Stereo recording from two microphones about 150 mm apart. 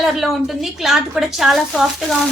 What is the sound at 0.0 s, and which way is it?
A woman's voice, centre (ahead or behind).